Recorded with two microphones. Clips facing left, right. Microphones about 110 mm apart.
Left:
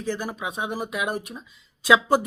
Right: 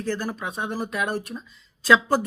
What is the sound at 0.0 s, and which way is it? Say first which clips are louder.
Speech: right 1 dB; 10° left (ahead or behind).